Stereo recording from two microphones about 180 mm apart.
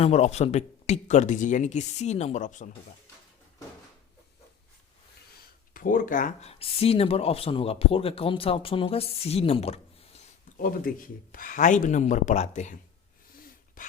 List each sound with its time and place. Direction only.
0.0 s speech: 40° left (ahead or behind)
5.7 s speech: 50° left (ahead or behind)
6.5 s speech: 35° left (ahead or behind)
10.6 s speech: 50° left (ahead or behind)
13.8 s dog: 50° left (ahead or behind)